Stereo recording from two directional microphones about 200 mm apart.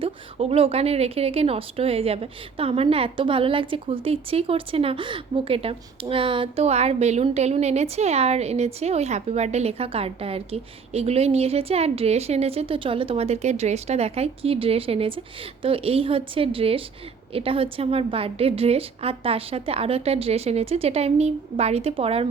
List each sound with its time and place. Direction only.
0.0 s a woman's voice: 30° right (ahead or behind)